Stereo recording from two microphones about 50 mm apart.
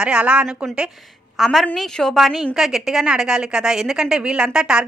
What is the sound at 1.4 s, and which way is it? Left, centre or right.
A woman's voice, centre.